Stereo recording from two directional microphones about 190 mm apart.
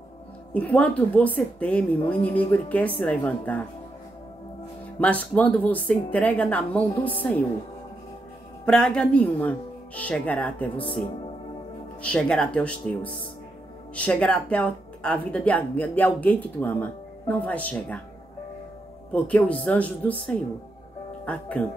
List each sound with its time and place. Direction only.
0.5 s speech: 5° left (ahead or behind)
2.0 s speech: 25° left (ahead or behind)
2.2 s speech: 10° left (ahead or behind)
5.0 s speech: 10° left (ahead or behind)
8.6 s speech: 5° left (ahead or behind)
10.8 s speech: 25° left (ahead or behind)
12.0 s speech: 5° left (ahead or behind)
19.1 s speech: 5° left (ahead or behind)